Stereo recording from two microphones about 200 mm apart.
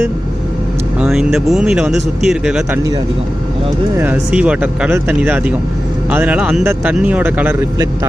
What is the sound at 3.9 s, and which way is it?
Speech, 10° right (ahead or behind).